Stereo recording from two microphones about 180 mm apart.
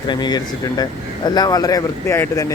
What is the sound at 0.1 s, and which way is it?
Speech, 25° left (ahead or behind).